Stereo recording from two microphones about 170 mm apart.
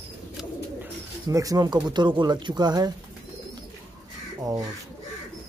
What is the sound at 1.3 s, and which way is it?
Speech, 20° right (ahead or behind).